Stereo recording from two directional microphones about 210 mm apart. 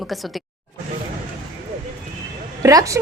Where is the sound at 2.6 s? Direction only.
15° right (ahead or behind).